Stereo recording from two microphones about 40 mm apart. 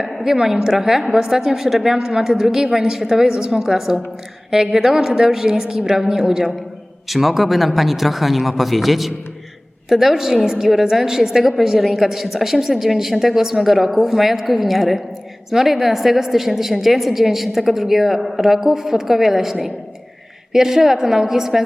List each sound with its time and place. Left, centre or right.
0.1 s a sound: centre
0.4 s a woman's voice: centre
7.1 s a woman's voice: centre